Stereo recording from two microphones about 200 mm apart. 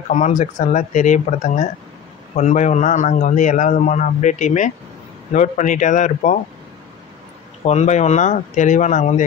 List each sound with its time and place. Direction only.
0.1 s a man's voice: 40° left (ahead or behind)
7.6 s a man's voice: 35° left (ahead or behind)